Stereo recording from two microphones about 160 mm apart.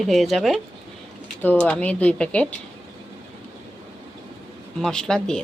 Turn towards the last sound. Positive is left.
turn(degrees=5)  # may be behind; listen again after turning